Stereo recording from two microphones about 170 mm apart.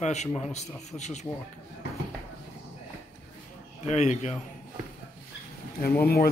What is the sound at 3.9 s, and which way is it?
Speech, 40° left (ahead or behind).